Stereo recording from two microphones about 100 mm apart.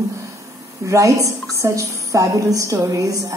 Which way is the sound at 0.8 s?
30° right (ahead or behind).